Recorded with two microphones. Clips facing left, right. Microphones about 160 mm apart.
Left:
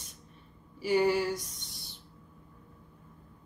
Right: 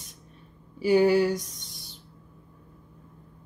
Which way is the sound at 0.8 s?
90° right.